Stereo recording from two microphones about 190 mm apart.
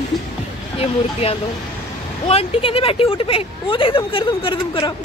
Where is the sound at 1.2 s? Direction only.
30° left (ahead or behind).